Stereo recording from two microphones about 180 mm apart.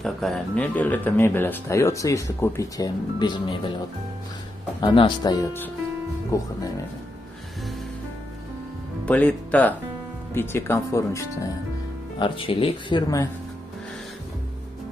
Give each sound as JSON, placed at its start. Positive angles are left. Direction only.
{"t": 0.0, "sound": "speech", "side_deg": 0}
{"t": 4.7, "sound": "speech", "side_deg": 25}
{"t": 9.0, "sound": "speech", "side_deg": 10}
{"t": 12.2, "sound": "speech", "side_deg": 30}